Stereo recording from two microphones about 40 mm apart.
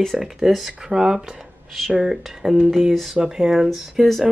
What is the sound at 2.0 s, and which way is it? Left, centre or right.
Speech, centre.